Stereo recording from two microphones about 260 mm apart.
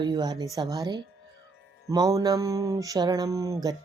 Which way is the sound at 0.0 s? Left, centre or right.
Centre.